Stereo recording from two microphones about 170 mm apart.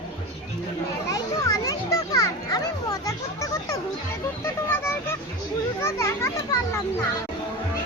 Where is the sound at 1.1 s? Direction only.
20° left (ahead or behind).